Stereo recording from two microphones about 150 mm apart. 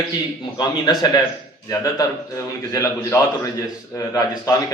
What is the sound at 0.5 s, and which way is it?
Speech, 30° left (ahead or behind).